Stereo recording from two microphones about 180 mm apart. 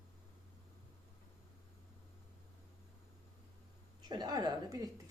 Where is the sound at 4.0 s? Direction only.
20° right (ahead or behind).